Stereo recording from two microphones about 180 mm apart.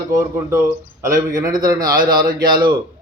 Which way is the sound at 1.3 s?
20° right (ahead or behind).